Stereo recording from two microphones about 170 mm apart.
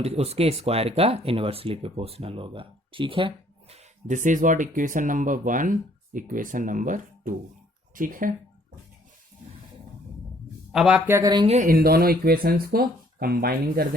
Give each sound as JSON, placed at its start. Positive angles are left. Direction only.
{"t": 0.0, "sound": "speech", "side_deg": -40}
{"t": 10.7, "sound": "speech", "side_deg": -5}
{"t": 11.4, "sound": "speech", "side_deg": -40}
{"t": 11.7, "sound": "speech", "side_deg": -65}